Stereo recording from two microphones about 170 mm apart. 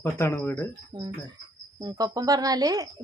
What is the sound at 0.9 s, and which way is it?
Speech, 25° right (ahead or behind).